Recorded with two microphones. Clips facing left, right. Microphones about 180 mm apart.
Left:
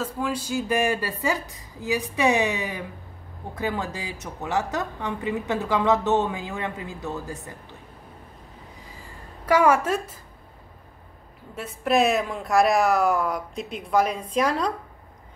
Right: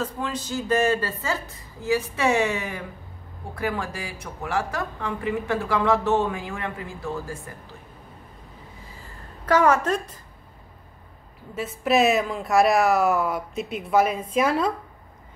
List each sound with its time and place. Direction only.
0.0 s a woman's voice: 10° left (ahead or behind)
9.5 s a woman's voice: 10° left (ahead or behind)
11.5 s a woman's voice: centre (ahead or behind)